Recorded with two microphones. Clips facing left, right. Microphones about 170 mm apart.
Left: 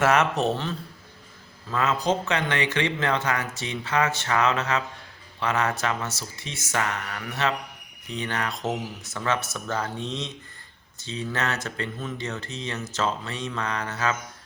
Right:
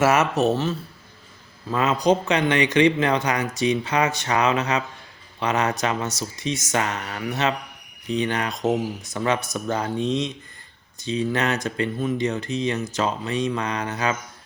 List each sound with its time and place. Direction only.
0.0 s speech: 5° right (ahead or behind)
1.7 s speech: 15° right (ahead or behind)